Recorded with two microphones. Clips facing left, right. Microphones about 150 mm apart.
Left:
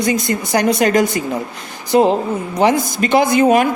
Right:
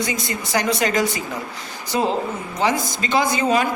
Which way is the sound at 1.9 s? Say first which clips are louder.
Left 8 dB; 65° left (ahead or behind).